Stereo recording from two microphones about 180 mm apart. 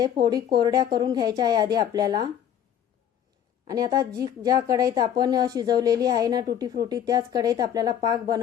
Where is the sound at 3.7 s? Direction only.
20° right (ahead or behind).